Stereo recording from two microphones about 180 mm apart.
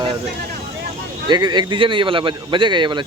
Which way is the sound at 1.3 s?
25° right (ahead or behind).